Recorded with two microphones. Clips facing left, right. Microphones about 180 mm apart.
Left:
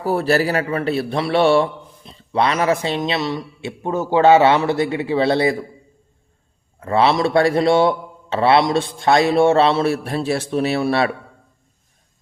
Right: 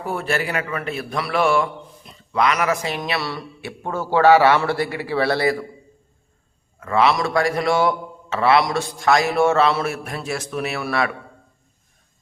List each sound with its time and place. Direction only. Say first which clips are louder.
0.0 s a man's voice: left 7 dB; 35° left (ahead or behind)
6.7 s a man's voice: left 2 dB; 30° left (ahead or behind)